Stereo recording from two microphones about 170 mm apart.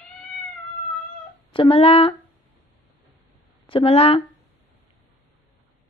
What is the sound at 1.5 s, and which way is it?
Speech, 35° left (ahead or behind).